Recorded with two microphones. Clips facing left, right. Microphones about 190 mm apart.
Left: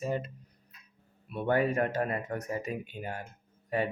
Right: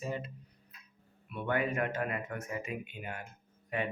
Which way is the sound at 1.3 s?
35° left (ahead or behind).